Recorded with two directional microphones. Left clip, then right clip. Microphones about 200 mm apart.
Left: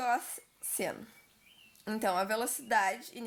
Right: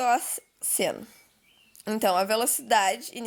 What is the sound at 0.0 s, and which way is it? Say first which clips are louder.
A woman's voice: right 8 dB; 45° right (ahead or behind).